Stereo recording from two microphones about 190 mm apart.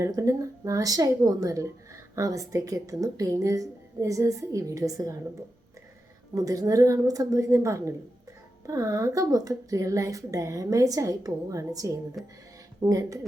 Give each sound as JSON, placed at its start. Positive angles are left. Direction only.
{"t": 0.0, "sound": "a woman's voice", "side_deg": -15}
{"t": 6.3, "sound": "a woman's voice", "side_deg": -15}
{"t": 12.2, "sound": "speech", "side_deg": 0}
{"t": 12.8, "sound": "a woman's voice", "side_deg": -15}